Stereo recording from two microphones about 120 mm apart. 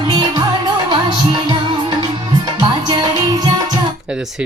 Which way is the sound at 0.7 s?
40° right (ahead or behind).